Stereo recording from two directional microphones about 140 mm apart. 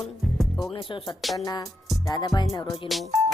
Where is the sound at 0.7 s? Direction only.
35° left (ahead or behind).